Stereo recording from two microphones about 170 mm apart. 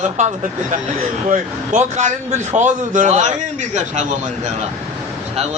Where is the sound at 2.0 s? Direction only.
45° right (ahead or behind).